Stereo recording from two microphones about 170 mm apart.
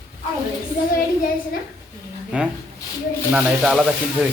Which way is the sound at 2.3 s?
5° right (ahead or behind).